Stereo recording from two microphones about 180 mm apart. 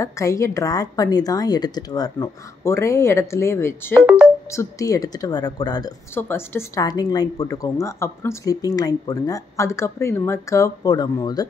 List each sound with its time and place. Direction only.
0.0 s a woman's voice: 15° left (ahead or behind)